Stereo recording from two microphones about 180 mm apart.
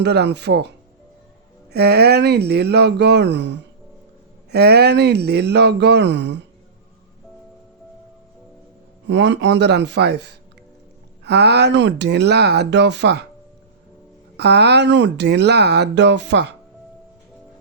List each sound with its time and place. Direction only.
0.0 s speech: 70° right (ahead or behind)
1.7 s speech: 65° right (ahead or behind)
4.5 s speech: 65° right (ahead or behind); by 6.4 s 80° right
9.0 s speech: 80° right
14.3 s speech: 65° right (ahead or behind)